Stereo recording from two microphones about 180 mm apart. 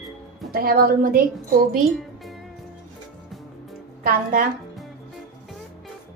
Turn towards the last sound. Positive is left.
turn(degrees=-50)  # may be behind; listen again after turning